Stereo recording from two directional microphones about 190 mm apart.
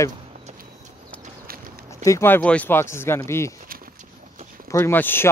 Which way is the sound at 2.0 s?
15° left (ahead or behind).